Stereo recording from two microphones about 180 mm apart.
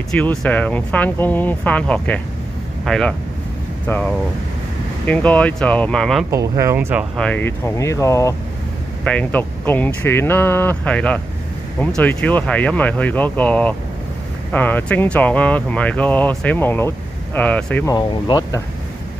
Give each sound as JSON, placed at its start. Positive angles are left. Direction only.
{"t": 0.1, "sound": "speech", "side_deg": 5}
{"t": 6.3, "sound": "speech", "side_deg": -15}
{"t": 7.2, "sound": "speech", "side_deg": 10}
{"t": 17.8, "sound": "speech", "side_deg": 25}